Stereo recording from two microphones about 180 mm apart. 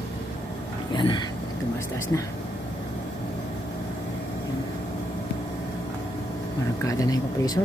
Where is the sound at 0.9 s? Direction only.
25° left (ahead or behind).